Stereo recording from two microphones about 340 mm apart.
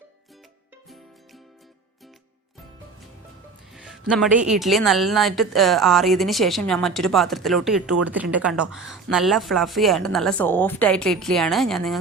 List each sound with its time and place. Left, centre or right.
3.8 s speech: centre